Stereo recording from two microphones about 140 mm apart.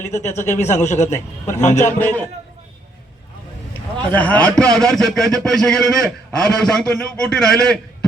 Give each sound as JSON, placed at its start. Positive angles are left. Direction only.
{"t": 0.0, "sound": "speech", "side_deg": 55}
{"t": 1.0, "sound": "a man's voice", "side_deg": 20}
{"t": 1.5, "sound": "speech", "side_deg": 55}
{"t": 3.9, "sound": "a man's voice", "side_deg": 10}